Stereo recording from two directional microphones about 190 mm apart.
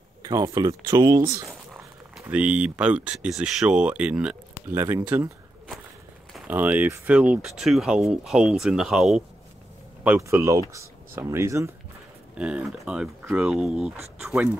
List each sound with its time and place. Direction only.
0.2 s speech: 20° right (ahead or behind)
1.5 s a sound: centre (ahead or behind)
2.2 s speech: 5° right (ahead or behind)